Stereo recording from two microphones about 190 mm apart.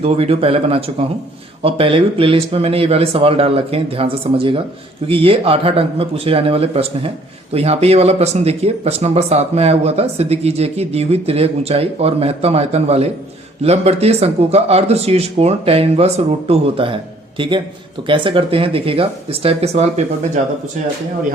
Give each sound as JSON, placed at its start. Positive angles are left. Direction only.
{"t": 0.0, "sound": "speech", "side_deg": -30}